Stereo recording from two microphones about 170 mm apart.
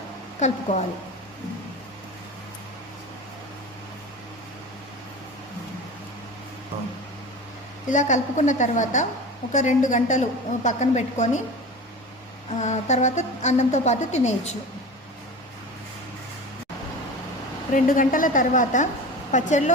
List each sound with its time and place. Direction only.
0.3 s a woman's voice: 40° left (ahead or behind)
7.9 s a woman's voice: 45° left (ahead or behind)
12.5 s a woman's voice: 45° left (ahead or behind)
17.7 s a woman's voice: 50° left (ahead or behind)